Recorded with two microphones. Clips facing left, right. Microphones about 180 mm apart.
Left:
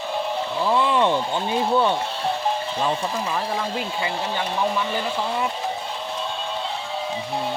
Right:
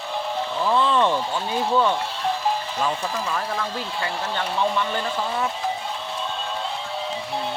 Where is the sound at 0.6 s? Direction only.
15° left (ahead or behind).